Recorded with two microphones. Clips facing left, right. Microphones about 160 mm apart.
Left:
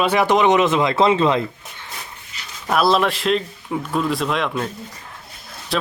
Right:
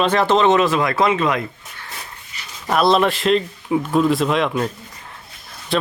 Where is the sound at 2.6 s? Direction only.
Centre (ahead or behind).